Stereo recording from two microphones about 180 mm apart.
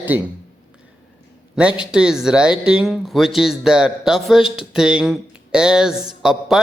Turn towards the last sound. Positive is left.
turn(degrees=0)  # may be behind; listen again after turning